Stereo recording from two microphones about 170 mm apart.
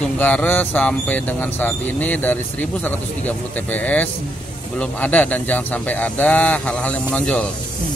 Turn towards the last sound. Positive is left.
turn(degrees=5)  # may be behind; listen again after turning